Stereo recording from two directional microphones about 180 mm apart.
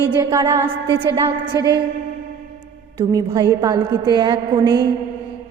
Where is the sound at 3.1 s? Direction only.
20° right (ahead or behind).